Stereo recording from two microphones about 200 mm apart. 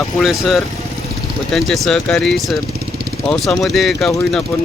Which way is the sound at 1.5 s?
Centre (ahead or behind).